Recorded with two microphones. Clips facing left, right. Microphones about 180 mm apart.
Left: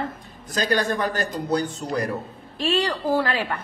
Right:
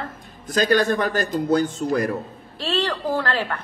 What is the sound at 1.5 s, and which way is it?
Speech, 50° right (ahead or behind).